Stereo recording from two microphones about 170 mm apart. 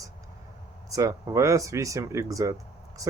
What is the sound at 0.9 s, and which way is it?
Speech, 20° right (ahead or behind).